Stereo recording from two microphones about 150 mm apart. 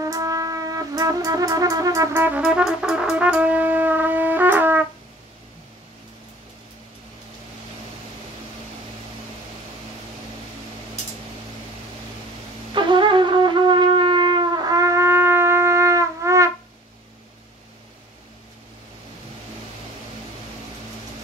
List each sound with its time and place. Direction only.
0.0 s music: 20° right (ahead or behind)
12.7 s shofar: 30° right (ahead or behind)